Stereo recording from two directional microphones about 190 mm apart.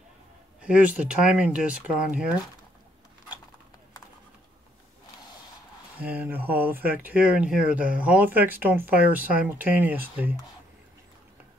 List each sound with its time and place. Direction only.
0.6 s speech: 5° right (ahead or behind)
5.9 s speech: 10° right (ahead or behind)